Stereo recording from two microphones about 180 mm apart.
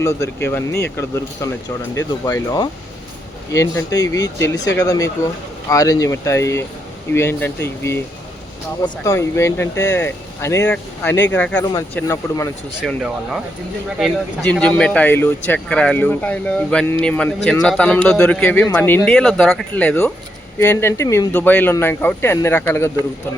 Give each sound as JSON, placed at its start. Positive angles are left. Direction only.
{"t": 0.0, "sound": "speech", "side_deg": 15}
{"t": 12.8, "sound": "speech", "side_deg": 0}